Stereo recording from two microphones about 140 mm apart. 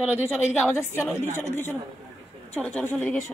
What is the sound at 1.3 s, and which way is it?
A woman's voice, 15° left (ahead or behind).